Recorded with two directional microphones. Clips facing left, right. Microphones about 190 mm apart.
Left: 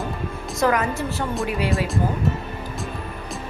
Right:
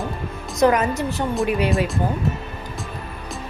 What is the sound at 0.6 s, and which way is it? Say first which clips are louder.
Speech: right 4 dB; 20° right (ahead or behind).